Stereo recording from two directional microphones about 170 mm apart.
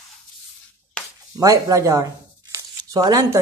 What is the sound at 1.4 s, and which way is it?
Speech, 20° right (ahead or behind).